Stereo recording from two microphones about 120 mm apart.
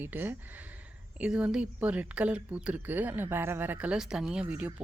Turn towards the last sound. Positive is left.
turn(degrees=-10)  # may be behind; listen again after turning